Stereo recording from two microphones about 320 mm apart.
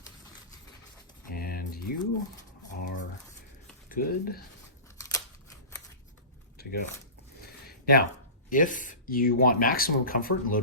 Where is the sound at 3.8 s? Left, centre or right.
Left.